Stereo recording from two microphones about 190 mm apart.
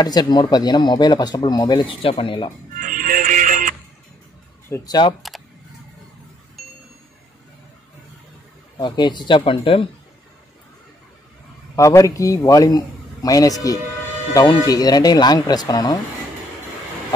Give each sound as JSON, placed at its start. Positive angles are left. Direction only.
{"t": 0.0, "sound": "speech", "side_deg": 20}
{"t": 2.8, "sound": "music", "side_deg": -45}
{"t": 4.6, "sound": "speech", "side_deg": 15}
{"t": 5.3, "sound": "a sound", "side_deg": 0}
{"t": 8.7, "sound": "speech", "side_deg": 20}
{"t": 11.7, "sound": "a man's voice", "side_deg": 15}